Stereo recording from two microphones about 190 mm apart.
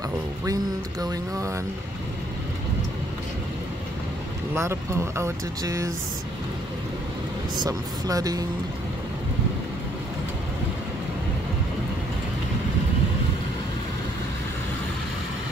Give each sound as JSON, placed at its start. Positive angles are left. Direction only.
{"t": 1.0, "sound": "speech", "side_deg": -15}
{"t": 4.6, "sound": "speech", "side_deg": -15}
{"t": 7.5, "sound": "speech", "side_deg": -20}